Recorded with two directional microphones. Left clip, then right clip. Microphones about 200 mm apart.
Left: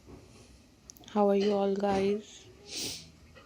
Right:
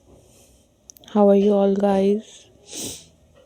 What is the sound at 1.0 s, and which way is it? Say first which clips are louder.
Speech: right 10 dB; 55° right (ahead or behind).